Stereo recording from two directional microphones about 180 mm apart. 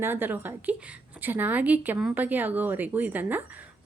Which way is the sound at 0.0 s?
10° right (ahead or behind).